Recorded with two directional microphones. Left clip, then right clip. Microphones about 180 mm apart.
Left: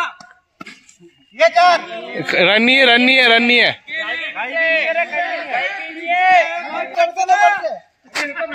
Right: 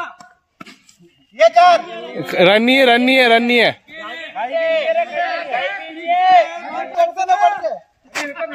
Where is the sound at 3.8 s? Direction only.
70° right (ahead or behind); by 5.0 s 90° right.